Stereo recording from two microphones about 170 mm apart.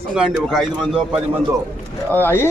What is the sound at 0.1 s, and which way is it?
Speech, 5° right (ahead or behind).